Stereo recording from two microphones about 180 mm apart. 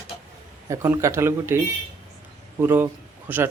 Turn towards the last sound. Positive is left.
turn(degrees=-10)  # may be behind; listen again after turning